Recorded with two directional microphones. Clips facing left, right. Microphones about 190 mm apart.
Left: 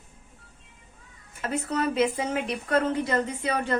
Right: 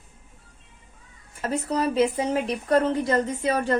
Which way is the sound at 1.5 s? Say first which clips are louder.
Right 2 dB; 35° right (ahead or behind).